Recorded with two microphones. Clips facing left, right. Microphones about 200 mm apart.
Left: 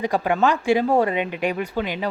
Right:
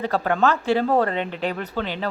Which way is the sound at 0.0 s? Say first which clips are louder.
Left 1 dB; 15° left (ahead or behind).